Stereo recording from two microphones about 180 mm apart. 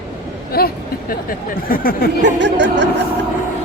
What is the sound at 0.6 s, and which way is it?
Speech, 60° left (ahead or behind).